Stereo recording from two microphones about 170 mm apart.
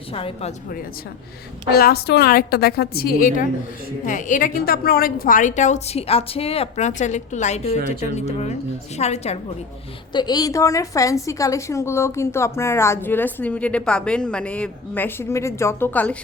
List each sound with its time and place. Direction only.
0.1 s speech: 35° left (ahead or behind)
1.7 s a woman's voice: 65° left (ahead or behind); by 9.4 s 40° left (ahead or behind)
10.1 s a woman's voice: 25° left (ahead or behind); by 16.1 s 10° left (ahead or behind)